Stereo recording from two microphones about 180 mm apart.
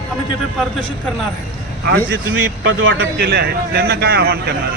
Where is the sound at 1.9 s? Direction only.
90° right.